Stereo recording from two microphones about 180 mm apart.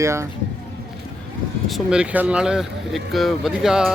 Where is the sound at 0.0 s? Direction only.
15° right (ahead or behind).